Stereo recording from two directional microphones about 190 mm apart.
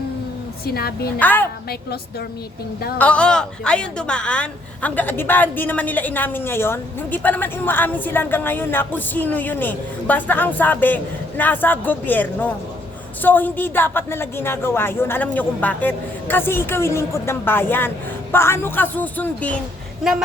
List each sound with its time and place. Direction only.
0.6 s a woman's voice: 55° left (ahead or behind)
1.2 s speech: 10° left (ahead or behind)
3.0 s speech: 5° left (ahead or behind)